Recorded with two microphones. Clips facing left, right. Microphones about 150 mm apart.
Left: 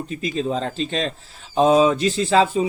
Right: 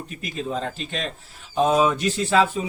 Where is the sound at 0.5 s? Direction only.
35° left (ahead or behind).